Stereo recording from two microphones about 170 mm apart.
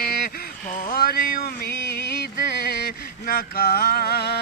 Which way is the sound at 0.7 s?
50° left (ahead or behind).